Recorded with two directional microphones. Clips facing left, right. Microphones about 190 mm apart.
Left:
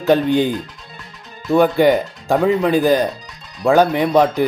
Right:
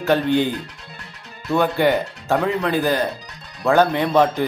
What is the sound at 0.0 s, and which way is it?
Speech, 15° left (ahead or behind).